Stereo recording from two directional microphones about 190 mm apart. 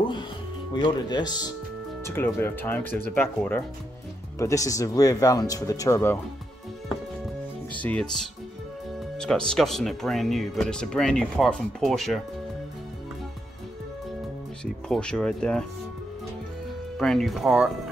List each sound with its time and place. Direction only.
0.7 s speech: 25° left (ahead or behind)
7.7 s speech: 5° left (ahead or behind)
9.2 s speech: 5° left (ahead or behind)
14.6 s speech: 5° left (ahead or behind)
17.0 s speech: centre (ahead or behind)